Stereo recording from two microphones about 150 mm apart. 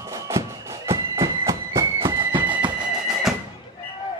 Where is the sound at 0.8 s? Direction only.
20° right (ahead or behind).